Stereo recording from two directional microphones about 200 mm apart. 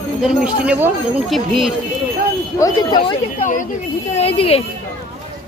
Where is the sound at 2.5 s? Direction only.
20° left (ahead or behind).